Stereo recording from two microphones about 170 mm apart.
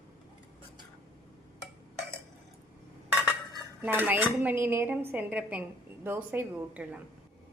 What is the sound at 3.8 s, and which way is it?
Speech, 10° right (ahead or behind).